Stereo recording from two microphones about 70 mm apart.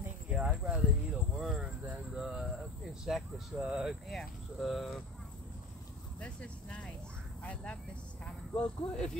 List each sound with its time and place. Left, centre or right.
0.3 s a sound: centre
3.5 s speech: centre
3.8 s speech: centre
6.1 s speech: centre